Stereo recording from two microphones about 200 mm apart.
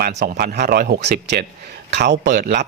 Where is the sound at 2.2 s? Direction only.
45° right (ahead or behind).